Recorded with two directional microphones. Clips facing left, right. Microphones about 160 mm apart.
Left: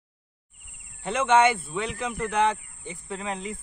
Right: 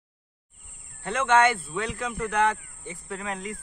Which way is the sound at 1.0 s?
20° left (ahead or behind).